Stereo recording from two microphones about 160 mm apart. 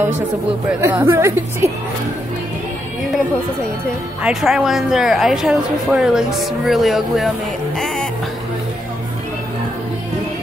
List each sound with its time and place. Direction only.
0.7 s a woman's voice: 10° right (ahead or behind)
4.2 s speech: centre (ahead or behind)